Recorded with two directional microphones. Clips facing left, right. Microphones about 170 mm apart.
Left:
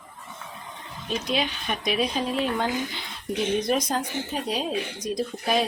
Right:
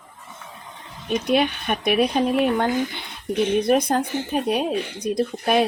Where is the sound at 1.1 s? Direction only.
60° right (ahead or behind).